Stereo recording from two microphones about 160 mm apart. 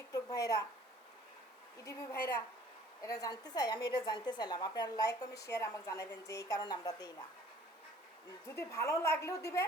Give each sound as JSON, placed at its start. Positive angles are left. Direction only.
{"t": 0.1, "sound": "a sound", "side_deg": 25}
{"t": 1.8, "sound": "a woman's voice", "side_deg": 15}
{"t": 8.4, "sound": "a woman's voice", "side_deg": 20}